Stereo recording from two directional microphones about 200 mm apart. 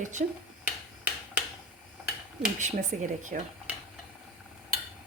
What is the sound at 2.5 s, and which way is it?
Speech, 35° right (ahead or behind).